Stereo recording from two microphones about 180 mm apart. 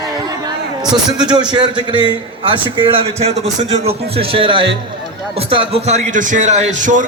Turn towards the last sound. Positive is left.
turn(degrees=-40)  # may be behind; listen again after turning